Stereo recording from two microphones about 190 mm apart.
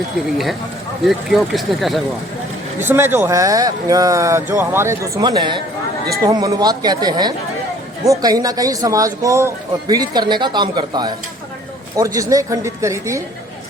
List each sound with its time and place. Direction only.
1.0 s speech: centre (ahead or behind)
2.8 s speech: 10° right (ahead or behind)